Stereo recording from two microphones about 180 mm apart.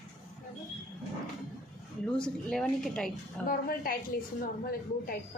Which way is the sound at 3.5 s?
55° left (ahead or behind).